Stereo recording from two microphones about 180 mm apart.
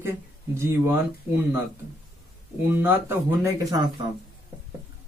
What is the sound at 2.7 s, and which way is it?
Speech, 10° right (ahead or behind).